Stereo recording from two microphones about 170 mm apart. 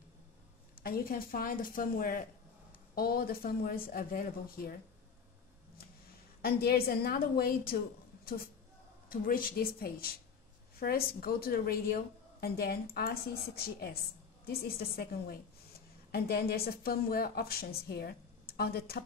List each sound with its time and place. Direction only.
0.7 s a woman's voice: 60° left (ahead or behind)
6.4 s a woman's voice: 65° left (ahead or behind)
9.1 s a woman's voice: 55° left (ahead or behind)
14.4 s a woman's voice: 65° left (ahead or behind)